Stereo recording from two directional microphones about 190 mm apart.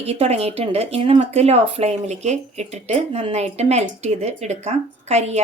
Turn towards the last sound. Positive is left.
turn(degrees=-35)  # may be behind; listen again after turning